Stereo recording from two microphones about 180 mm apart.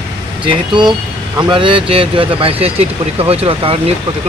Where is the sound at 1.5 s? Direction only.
30° right (ahead or behind).